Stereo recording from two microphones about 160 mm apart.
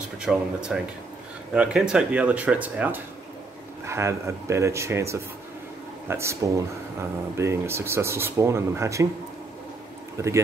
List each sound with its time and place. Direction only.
0.2 s speech: 5° right (ahead or behind)
10.1 s speech: 20° right (ahead or behind)